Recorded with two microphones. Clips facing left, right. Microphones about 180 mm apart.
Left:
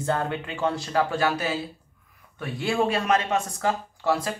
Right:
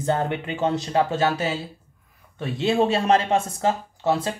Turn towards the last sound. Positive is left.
turn(degrees=-20)  # may be behind; listen again after turning